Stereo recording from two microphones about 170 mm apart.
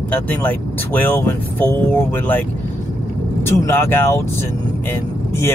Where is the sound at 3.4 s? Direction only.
15° left (ahead or behind).